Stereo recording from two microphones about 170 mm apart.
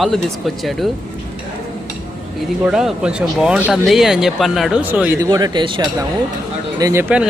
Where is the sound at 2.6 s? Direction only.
5° right (ahead or behind); by 7.0 s 20° right (ahead or behind).